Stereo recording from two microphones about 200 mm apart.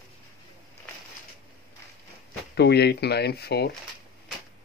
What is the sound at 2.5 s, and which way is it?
Speech, 55° left (ahead or behind).